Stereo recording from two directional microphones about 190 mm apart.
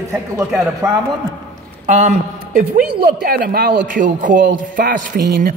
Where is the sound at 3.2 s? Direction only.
50° right (ahead or behind).